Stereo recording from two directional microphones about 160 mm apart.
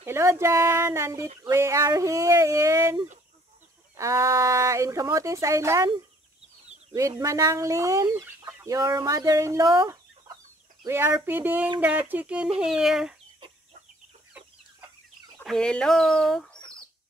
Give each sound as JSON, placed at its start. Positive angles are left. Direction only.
{"t": 0.0, "sound": "speech", "side_deg": -15}
{"t": 7.0, "sound": "speech", "side_deg": -20}
{"t": 12.5, "sound": "chicken", "side_deg": -5}
{"t": 15.4, "sound": "chicken", "side_deg": 5}